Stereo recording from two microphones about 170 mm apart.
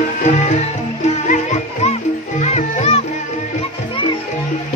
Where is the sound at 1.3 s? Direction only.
40° left (ahead or behind).